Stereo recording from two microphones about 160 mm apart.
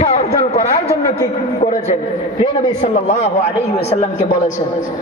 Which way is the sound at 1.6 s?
45° left (ahead or behind).